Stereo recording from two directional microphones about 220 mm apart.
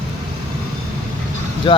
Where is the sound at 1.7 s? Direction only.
20° left (ahead or behind).